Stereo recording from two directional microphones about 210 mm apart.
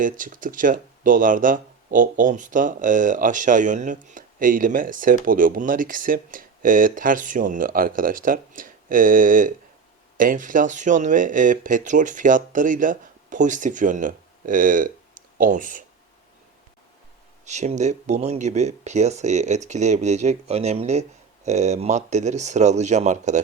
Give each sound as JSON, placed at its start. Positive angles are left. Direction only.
{"t": 0.0, "sound": "speech", "side_deg": -40}
{"t": 17.4, "sound": "speech", "side_deg": -35}